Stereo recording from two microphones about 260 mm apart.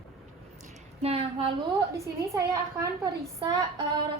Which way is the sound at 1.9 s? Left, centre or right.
Centre.